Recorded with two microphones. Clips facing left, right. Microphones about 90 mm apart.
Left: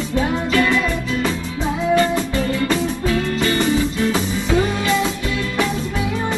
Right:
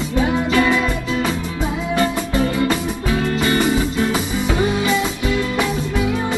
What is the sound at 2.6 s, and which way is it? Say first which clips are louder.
Music: left 1 dB; 20° right (ahead or behind).